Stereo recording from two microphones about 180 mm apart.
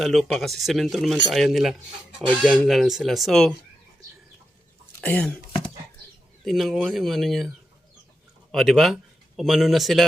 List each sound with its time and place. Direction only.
0.0 s speech: centre (ahead or behind)
4.9 s speech: 5° left (ahead or behind)
6.4 s speech: centre (ahead or behind)
8.5 s a man's voice: centre (ahead or behind)